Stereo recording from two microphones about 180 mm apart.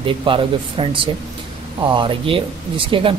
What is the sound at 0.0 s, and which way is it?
Speech, 30° right (ahead or behind).